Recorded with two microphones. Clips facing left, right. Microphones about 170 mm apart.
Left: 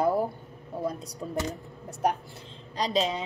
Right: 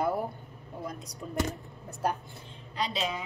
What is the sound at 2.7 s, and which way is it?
Speech, 35° left (ahead or behind).